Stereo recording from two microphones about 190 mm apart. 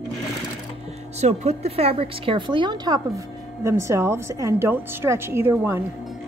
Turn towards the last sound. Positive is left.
turn(degrees=-10)  # may be behind; listen again after turning